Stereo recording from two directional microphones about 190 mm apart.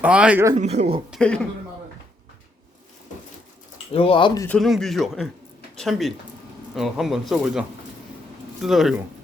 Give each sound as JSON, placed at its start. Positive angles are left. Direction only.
{"t": 0.0, "sound": "speech", "side_deg": -5}
{"t": 0.5, "sound": "speech", "side_deg": -40}
{"t": 1.1, "sound": "a woman's voice", "side_deg": 5}
{"t": 3.9, "sound": "speech", "side_deg": 30}
{"t": 4.4, "sound": "speech", "side_deg": 5}
{"t": 8.6, "sound": "speech", "side_deg": 0}